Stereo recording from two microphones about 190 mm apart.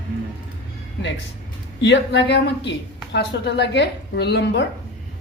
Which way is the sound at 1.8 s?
70° left (ahead or behind).